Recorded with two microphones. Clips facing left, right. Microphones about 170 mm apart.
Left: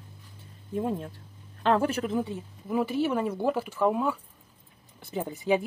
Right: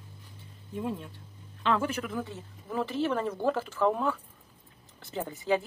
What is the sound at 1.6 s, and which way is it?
Speech, 40° left (ahead or behind).